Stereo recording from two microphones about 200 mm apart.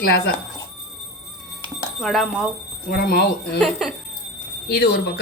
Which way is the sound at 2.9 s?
55° left (ahead or behind).